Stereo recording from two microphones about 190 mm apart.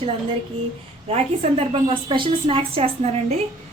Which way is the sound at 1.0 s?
30° right (ahead or behind).